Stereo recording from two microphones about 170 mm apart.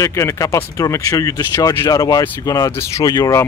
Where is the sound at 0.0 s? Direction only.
15° left (ahead or behind).